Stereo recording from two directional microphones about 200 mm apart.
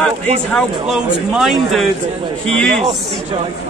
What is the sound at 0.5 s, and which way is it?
Speech, centre (ahead or behind).